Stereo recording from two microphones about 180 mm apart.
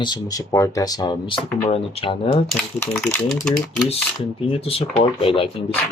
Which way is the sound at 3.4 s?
5° left (ahead or behind).